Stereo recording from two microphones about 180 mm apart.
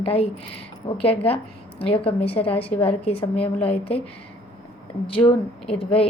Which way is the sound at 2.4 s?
10° left (ahead or behind).